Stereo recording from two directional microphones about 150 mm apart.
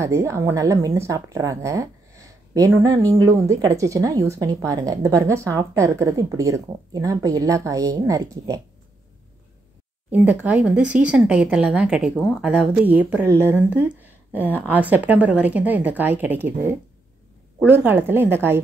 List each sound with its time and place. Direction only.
0.0 s speech: 20° right (ahead or behind)
10.1 s speech: 10° right (ahead or behind)